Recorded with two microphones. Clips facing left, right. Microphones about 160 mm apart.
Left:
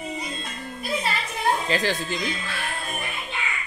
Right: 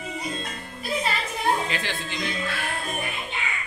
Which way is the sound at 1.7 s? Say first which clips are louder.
Left 6 dB; 40° left (ahead or behind).